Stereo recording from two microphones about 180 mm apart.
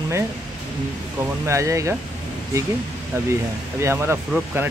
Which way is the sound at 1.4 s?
15° right (ahead or behind).